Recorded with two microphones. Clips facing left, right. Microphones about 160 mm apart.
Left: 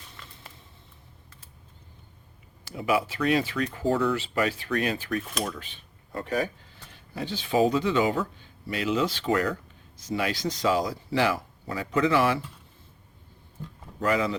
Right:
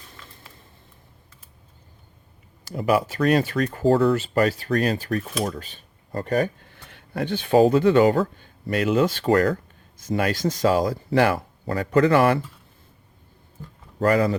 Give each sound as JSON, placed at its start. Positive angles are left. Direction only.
{"t": 2.6, "sound": "speech", "side_deg": -40}
{"t": 14.0, "sound": "speech", "side_deg": -45}